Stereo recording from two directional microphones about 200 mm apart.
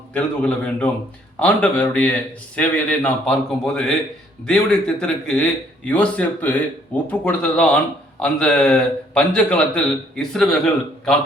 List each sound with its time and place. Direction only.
0.1 s a man's voice: 5° left (ahead or behind)